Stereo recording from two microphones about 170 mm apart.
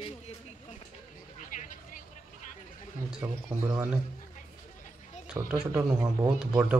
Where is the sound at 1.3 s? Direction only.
50° left (ahead or behind).